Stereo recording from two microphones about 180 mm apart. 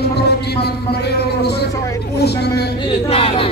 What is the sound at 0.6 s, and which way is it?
Speech, 65° left (ahead or behind).